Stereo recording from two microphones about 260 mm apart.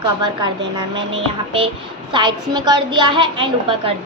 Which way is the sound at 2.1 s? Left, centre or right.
Centre.